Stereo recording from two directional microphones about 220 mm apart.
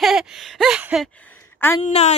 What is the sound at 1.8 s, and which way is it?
Speech, 30° left (ahead or behind).